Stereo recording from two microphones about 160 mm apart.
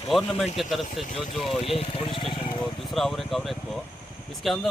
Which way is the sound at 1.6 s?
35° left (ahead or behind).